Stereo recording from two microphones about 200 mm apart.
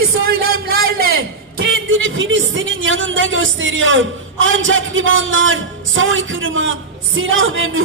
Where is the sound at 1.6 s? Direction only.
75° right (ahead or behind).